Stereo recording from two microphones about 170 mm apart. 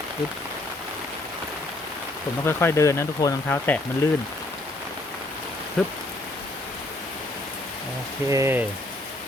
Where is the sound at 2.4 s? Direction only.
15° left (ahead or behind).